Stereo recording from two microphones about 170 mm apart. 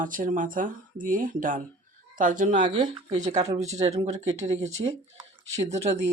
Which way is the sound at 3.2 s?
45° right (ahead or behind).